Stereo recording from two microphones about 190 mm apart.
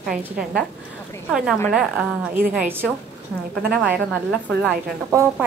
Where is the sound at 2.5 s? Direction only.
10° right (ahead or behind).